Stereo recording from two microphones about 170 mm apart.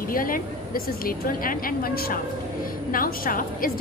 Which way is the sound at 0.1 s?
55° left (ahead or behind).